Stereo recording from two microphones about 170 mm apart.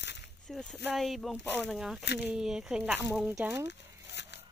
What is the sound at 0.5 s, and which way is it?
Speech, centre (ahead or behind).